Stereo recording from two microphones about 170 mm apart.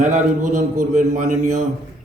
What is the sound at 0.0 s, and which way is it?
A man's voice, 50° right (ahead or behind).